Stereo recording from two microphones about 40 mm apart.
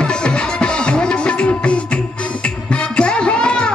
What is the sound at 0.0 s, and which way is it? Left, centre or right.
Music, left.